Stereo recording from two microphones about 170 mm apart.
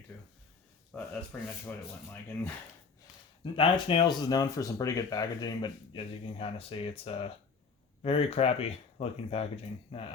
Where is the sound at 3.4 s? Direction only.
30° left (ahead or behind).